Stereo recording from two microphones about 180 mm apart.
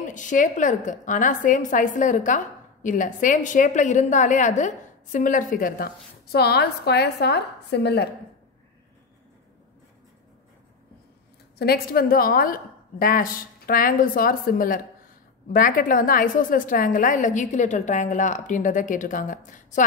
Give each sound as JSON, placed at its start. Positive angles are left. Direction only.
{"t": 0.0, "sound": "a woman's voice", "side_deg": 45}
{"t": 6.3, "sound": "a woman's voice", "side_deg": 60}
{"t": 11.5, "sound": "a woman's voice", "side_deg": 60}